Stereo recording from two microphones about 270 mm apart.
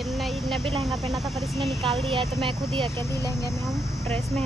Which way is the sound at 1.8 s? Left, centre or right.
Centre.